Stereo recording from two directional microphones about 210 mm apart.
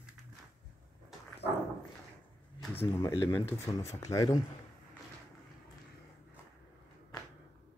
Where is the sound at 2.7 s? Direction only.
10° left (ahead or behind).